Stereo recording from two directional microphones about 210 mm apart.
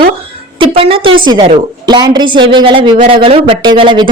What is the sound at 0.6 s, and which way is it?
A woman's voice, 25° right (ahead or behind).